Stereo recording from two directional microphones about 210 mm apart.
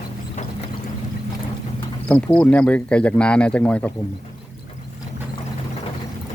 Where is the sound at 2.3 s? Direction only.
5° left (ahead or behind).